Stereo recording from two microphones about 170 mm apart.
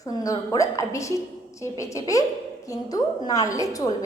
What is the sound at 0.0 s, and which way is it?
A woman's voice, 20° left (ahead or behind).